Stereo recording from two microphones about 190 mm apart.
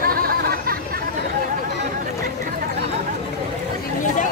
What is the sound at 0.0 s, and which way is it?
Chatter, 50° right (ahead or behind).